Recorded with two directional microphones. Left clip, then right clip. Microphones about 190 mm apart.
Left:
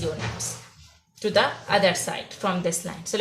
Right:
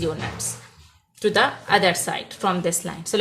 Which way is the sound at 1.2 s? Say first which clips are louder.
Right 2 dB; 50° right (ahead or behind).